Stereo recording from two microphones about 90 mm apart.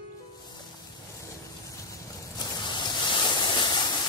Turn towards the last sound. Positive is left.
turn(degrees=60)  # may be behind; listen again after turning